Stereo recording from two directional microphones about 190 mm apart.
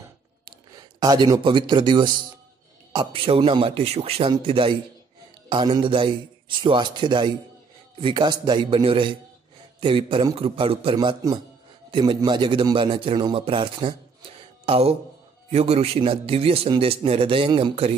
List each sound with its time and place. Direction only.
0.5 s a man's voice: 20° right (ahead or behind)